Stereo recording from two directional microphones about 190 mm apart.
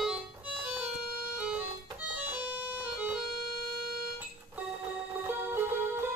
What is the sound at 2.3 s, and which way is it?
Music, 10° right (ahead or behind).